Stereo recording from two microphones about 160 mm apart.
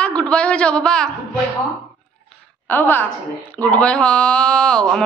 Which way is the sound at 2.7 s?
10° left (ahead or behind).